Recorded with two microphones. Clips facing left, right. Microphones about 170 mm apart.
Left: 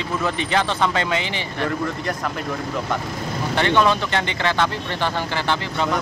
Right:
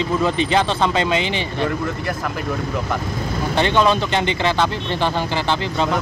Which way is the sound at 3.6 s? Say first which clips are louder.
Right 1 dB; 20° right (ahead or behind).